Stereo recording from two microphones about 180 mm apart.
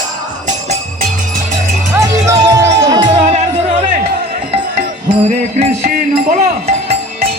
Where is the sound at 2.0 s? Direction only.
15° right (ahead or behind).